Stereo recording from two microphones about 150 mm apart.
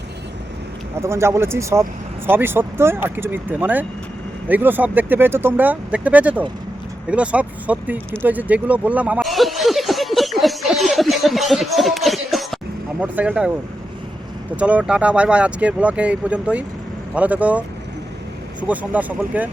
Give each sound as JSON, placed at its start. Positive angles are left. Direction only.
{"t": 1.0, "sound": "speech", "side_deg": -20}
{"t": 8.2, "sound": "a sound", "side_deg": -10}
{"t": 13.0, "sound": "speech", "side_deg": -10}
{"t": 14.5, "sound": "speech", "side_deg": -10}
{"t": 18.7, "sound": "speech", "side_deg": -10}